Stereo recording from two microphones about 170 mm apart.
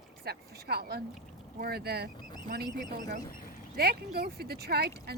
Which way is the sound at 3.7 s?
70° right (ahead or behind).